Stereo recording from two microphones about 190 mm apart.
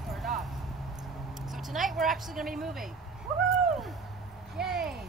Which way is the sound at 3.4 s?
Centre (ahead or behind).